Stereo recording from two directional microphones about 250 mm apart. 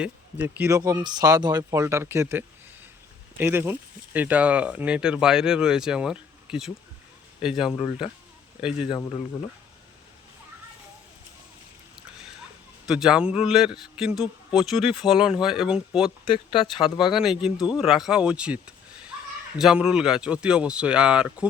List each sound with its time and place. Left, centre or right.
0.0 s a man's voice: centre
12.8 s a man's voice: centre
16.2 s speech: centre
16.7 s a man's voice: centre